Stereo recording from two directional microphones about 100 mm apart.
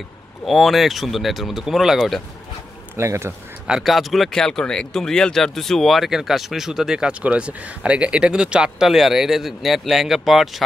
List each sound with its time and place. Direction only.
0.5 s speech: centre (ahead or behind)
3.0 s speech: 25° right (ahead or behind)
3.6 s speech: 5° right (ahead or behind)